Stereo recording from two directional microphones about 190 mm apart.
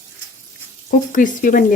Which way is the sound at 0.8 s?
45° left (ahead or behind).